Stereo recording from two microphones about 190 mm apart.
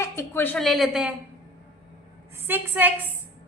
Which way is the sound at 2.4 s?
10° right (ahead or behind).